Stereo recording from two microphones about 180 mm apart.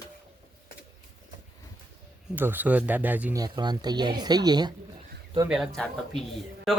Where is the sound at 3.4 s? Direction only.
25° right (ahead or behind).